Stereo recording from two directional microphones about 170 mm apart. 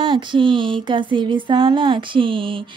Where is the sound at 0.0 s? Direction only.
30° right (ahead or behind).